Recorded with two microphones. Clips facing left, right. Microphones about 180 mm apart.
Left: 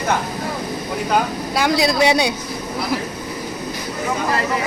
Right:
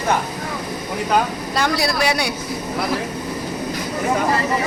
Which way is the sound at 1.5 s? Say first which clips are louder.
Left 3 dB; 15° left (ahead or behind).